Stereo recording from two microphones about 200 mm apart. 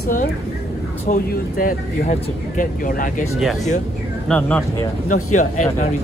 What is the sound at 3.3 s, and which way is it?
Speech, centre (ahead or behind).